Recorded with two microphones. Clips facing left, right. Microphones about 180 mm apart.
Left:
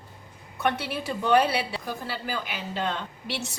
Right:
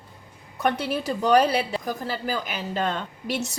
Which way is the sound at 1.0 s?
40° right (ahead or behind).